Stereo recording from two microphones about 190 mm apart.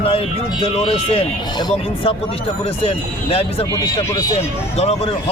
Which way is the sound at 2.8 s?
30° left (ahead or behind).